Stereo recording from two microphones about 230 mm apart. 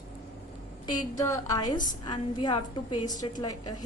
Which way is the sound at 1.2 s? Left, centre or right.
Centre.